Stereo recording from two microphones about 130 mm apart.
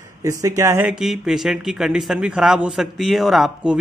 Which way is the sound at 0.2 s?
25° right (ahead or behind).